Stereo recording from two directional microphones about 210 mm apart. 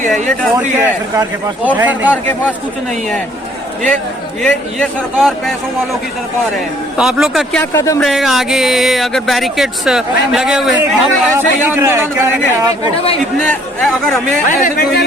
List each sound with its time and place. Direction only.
0.1 s speech: 5° left (ahead or behind)
1.1 s speech: 10° right (ahead or behind)
4.4 s speech: centre (ahead or behind)
6.9 s speech: 5° right (ahead or behind)
7.6 s speech: 15° left (ahead or behind)
8.0 s speech: centre (ahead or behind)
13.4 s speech: 5° left (ahead or behind)
14.6 s speech: 45° left (ahead or behind)